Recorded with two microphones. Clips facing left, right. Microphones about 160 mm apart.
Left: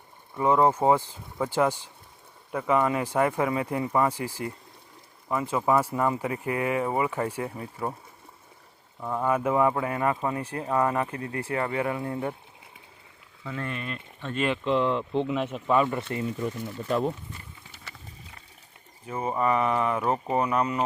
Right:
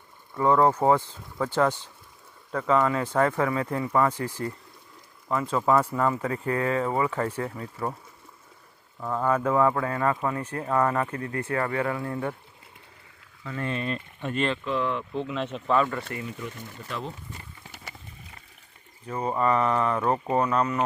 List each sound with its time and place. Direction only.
0.3 s speech: 15° left (ahead or behind)
9.0 s speech: 15° left (ahead or behind)
11.2 s speech: 30° left (ahead or behind)
13.7 s speech: 30° right (ahead or behind)
14.3 s speech: 10° left (ahead or behind)
14.6 s speech: 25° left (ahead or behind)
15.4 s speech: 10° left (ahead or behind)
19.0 s speech: 10° left (ahead or behind)